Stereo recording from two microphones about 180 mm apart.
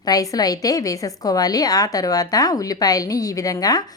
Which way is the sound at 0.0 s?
20° left (ahead or behind).